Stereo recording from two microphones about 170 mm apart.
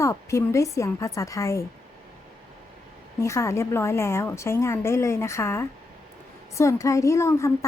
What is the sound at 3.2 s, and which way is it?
A woman's voice, 15° left (ahead or behind).